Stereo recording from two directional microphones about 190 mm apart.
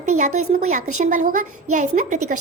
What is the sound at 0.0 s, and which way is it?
A child's voice, 35° right (ahead or behind).